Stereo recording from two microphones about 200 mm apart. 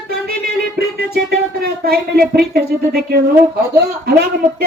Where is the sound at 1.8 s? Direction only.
50° right (ahead or behind).